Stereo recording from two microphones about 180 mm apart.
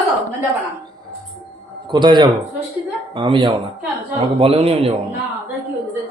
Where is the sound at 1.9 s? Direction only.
25° right (ahead or behind).